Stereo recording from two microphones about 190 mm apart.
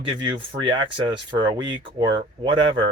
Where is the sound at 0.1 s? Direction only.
25° right (ahead or behind).